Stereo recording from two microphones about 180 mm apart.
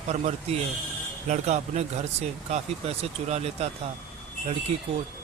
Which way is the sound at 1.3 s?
40° right (ahead or behind).